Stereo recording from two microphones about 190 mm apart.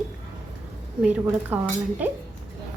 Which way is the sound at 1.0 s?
10° right (ahead or behind).